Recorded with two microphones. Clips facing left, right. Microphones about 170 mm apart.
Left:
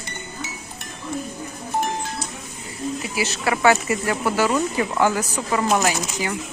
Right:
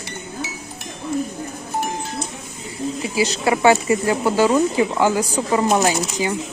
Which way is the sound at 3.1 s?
20° right (ahead or behind).